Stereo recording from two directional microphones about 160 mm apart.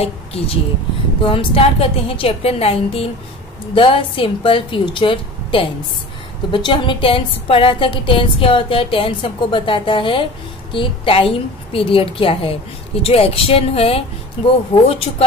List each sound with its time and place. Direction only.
0.0 s a woman's voice: 40° left (ahead or behind)